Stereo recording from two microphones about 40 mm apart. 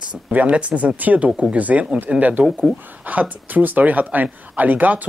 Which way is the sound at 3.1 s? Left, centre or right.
Right.